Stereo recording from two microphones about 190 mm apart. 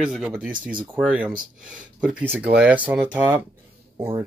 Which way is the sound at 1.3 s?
45° right (ahead or behind).